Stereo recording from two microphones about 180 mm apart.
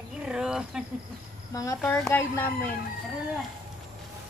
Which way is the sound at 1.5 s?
20° left (ahead or behind).